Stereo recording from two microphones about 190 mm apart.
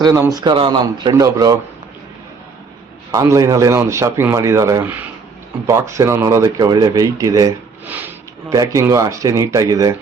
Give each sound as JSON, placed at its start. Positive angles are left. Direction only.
{"t": 0.0, "sound": "a man's voice", "side_deg": -15}
{"t": 3.1, "sound": "speech", "side_deg": -15}